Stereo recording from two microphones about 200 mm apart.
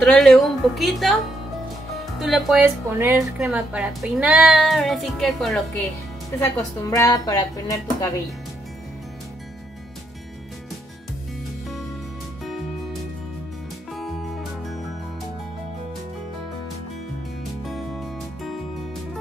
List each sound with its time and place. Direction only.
0.0 s speech: centre (ahead or behind)
2.1 s speech: centre (ahead or behind)
2.6 s speech: 10° right (ahead or behind)
6.4 s speech: 15° left (ahead or behind)
17.6 s music: centre (ahead or behind)